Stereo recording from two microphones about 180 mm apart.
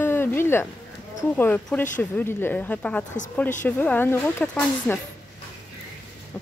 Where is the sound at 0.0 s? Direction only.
10° left (ahead or behind).